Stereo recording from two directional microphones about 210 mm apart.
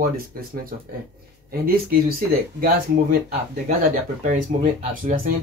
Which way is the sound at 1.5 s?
45° right (ahead or behind).